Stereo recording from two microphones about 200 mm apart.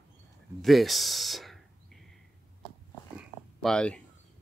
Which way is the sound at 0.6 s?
Centre (ahead or behind).